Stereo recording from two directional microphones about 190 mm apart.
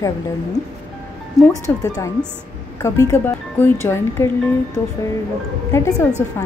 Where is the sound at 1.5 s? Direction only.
15° left (ahead or behind).